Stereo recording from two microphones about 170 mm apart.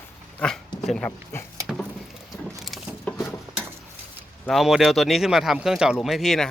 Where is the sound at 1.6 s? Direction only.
5° left (ahead or behind).